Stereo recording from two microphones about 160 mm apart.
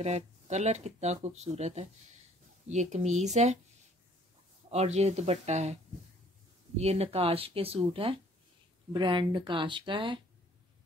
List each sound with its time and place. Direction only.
0.0 s speech: 45° right (ahead or behind)
4.6 s speech: 40° right (ahead or behind)
6.8 s speech: 40° right (ahead or behind)